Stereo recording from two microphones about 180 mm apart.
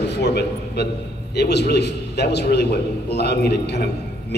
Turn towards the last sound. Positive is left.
turn(degrees=65)  # may be behind; listen again after turning